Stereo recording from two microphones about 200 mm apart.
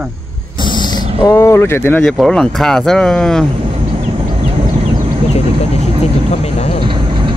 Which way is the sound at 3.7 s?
25° right (ahead or behind).